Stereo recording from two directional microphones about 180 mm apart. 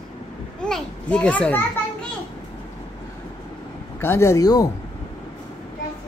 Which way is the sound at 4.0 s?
15° left (ahead or behind).